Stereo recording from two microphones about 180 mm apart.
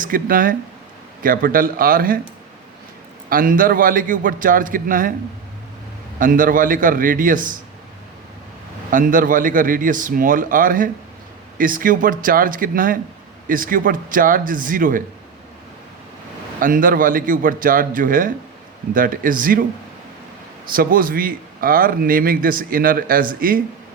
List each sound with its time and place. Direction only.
0.0 s a man's voice: 50° right (ahead or behind)
3.2 s a man's voice: 50° right (ahead or behind)
6.1 s a man's voice: 50° right (ahead or behind)
8.9 s a man's voice: 50° right (ahead or behind)
16.6 s a man's voice: 50° right (ahead or behind)
20.7 s a man's voice: 50° right (ahead or behind)